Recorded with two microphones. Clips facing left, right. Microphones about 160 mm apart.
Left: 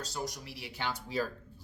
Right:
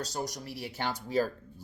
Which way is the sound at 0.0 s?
40° right (ahead or behind).